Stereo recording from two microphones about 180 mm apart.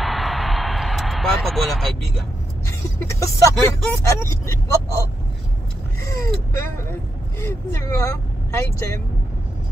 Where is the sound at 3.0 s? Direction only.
15° left (ahead or behind).